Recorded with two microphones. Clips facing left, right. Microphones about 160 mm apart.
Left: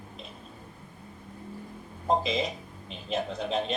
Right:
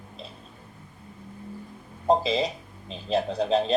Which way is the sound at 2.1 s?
35° right (ahead or behind).